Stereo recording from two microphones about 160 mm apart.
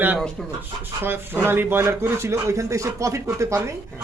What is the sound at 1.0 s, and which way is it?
A man's voice, 15° right (ahead or behind).